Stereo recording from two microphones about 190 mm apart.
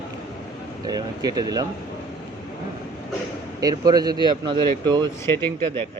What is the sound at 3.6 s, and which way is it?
Speech, 20° right (ahead or behind).